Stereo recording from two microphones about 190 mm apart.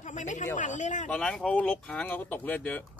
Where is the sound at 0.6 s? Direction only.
40° left (ahead or behind).